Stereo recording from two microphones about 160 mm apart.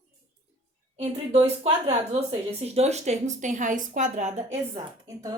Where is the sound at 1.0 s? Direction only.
40° right (ahead or behind).